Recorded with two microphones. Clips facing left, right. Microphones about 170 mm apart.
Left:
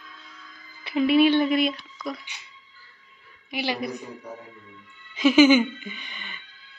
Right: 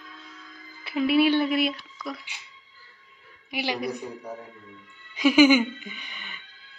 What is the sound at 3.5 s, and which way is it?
Speech, 10° right (ahead or behind).